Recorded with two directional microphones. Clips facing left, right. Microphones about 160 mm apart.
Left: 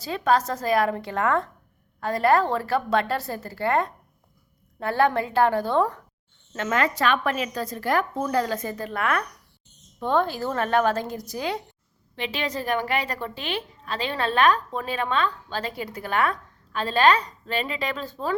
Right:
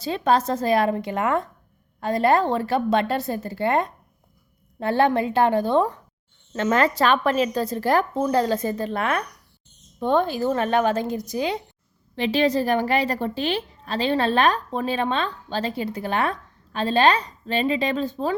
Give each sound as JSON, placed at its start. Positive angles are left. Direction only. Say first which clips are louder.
{"t": 0.0, "sound": "a woman's voice", "louder": "right 2 dB", "side_deg": -25}
{"t": 6.5, "sound": "a woman's voice", "louder": "right 4 dB", "side_deg": -30}
{"t": 12.1, "sound": "a woman's voice", "louder": "right 9 dB", "side_deg": -35}